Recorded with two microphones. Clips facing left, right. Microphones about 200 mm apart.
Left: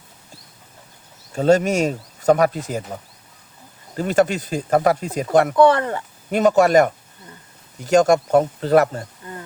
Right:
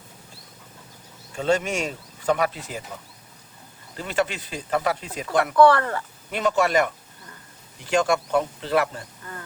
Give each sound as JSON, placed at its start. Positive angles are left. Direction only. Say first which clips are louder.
{"t": 1.3, "sound": "speech", "louder": "left 7 dB", "side_deg": 40}
{"t": 5.5, "sound": "speech", "louder": "right 2 dB", "side_deg": 20}
{"t": 6.3, "sound": "speech", "louder": "left 7 dB", "side_deg": 45}
{"t": 9.2, "sound": "wild animals", "louder": "left 4 dB", "side_deg": 15}